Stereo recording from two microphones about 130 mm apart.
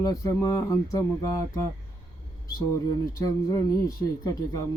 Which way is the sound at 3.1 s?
25° left (ahead or behind).